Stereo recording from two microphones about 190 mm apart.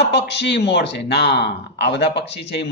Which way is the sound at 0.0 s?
65° left (ahead or behind).